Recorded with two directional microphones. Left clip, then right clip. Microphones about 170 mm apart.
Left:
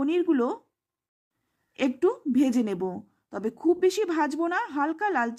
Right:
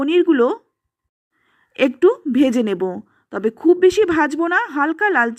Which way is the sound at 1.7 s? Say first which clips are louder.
Right 10 dB; 25° right (ahead or behind).